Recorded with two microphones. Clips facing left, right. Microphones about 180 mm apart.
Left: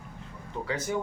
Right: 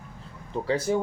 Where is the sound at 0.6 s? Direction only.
30° right (ahead or behind).